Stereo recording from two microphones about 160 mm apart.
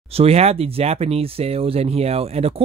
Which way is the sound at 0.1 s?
40° right (ahead or behind).